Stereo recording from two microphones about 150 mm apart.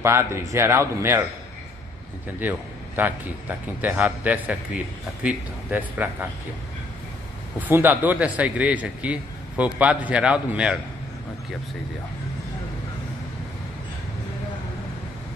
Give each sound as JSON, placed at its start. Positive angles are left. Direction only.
{"t": 0.0, "sound": "a man's voice", "side_deg": -15}
{"t": 3.0, "sound": "a man's voice", "side_deg": -10}
{"t": 7.6, "sound": "a man's voice", "side_deg": -15}